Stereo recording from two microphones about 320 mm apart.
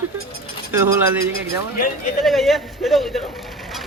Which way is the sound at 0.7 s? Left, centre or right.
Centre.